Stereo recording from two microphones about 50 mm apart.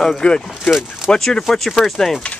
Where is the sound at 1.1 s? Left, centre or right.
Centre.